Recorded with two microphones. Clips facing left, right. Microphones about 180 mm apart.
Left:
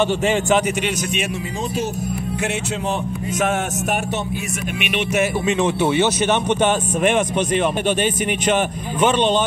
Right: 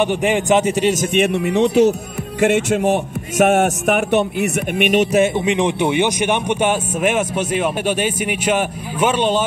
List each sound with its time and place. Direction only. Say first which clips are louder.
0.0 s speech: right 1 dB; 15° right (ahead or behind)
1.1 s music: right 9 dB; 60° right (ahead or behind)
5.4 s speech: right 1 dB; 15° right (ahead or behind)